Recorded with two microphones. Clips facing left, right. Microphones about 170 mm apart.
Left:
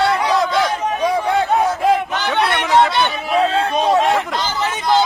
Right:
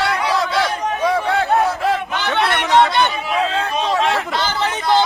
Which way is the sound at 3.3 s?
35° left (ahead or behind).